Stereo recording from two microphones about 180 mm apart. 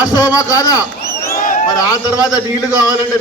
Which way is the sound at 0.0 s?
20° left (ahead or behind).